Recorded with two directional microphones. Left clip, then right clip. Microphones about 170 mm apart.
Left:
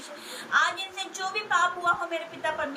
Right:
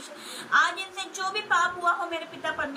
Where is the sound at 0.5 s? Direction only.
5° left (ahead or behind).